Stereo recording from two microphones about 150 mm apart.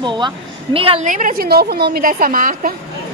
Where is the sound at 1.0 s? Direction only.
60° right (ahead or behind).